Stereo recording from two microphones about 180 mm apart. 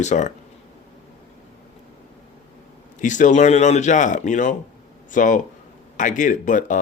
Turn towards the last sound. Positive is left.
turn(degrees=45)  # may be behind; listen again after turning